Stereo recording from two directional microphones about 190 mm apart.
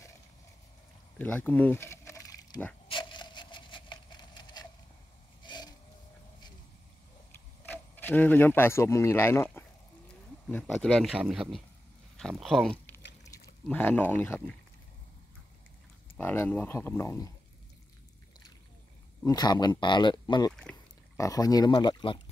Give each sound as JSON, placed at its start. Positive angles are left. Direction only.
{"t": 1.1, "sound": "a sound", "side_deg": 5}
{"t": 2.9, "sound": "splinter", "side_deg": 25}
{"t": 5.4, "sound": "a sound", "side_deg": 20}
{"t": 7.3, "sound": "a man's voice", "side_deg": 10}
{"t": 16.2, "sound": "speech", "side_deg": 10}
{"t": 19.2, "sound": "speech", "side_deg": 20}